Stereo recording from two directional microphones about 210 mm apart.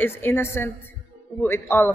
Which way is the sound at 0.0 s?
10° left (ahead or behind).